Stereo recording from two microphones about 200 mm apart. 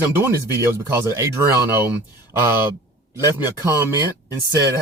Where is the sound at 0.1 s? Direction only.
10° right (ahead or behind).